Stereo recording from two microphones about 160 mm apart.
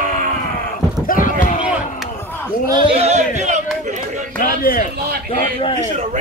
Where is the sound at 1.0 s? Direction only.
55° left (ahead or behind).